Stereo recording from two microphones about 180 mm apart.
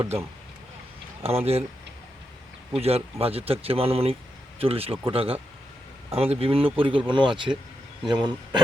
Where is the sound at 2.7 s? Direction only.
35° right (ahead or behind).